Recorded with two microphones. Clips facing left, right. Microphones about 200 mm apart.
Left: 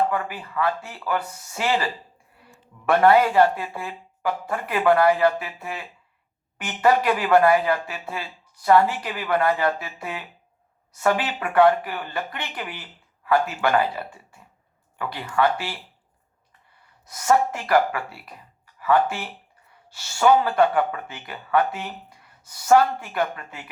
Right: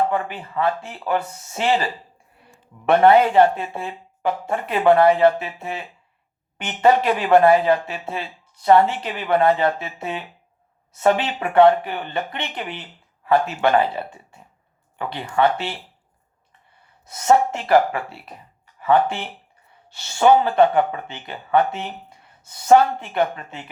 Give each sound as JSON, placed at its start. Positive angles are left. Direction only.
{"t": 0.1, "sound": "speech", "side_deg": -25}
{"t": 17.1, "sound": "speech", "side_deg": -25}